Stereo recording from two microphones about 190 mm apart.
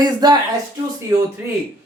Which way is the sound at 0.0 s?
20° right (ahead or behind).